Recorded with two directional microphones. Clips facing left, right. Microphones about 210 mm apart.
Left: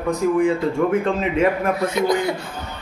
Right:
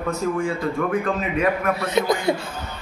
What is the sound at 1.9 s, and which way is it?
Speech, 25° right (ahead or behind).